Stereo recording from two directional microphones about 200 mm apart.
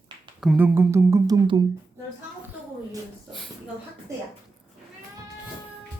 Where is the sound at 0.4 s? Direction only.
10° right (ahead or behind).